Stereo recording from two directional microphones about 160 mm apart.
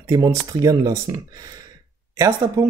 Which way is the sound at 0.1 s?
25° right (ahead or behind).